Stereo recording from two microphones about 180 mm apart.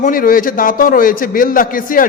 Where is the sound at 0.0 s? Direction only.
50° left (ahead or behind).